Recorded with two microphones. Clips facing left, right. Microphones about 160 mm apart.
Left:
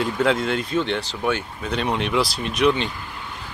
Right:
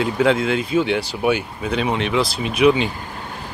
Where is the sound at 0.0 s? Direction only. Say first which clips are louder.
Right 3 dB; centre (ahead or behind).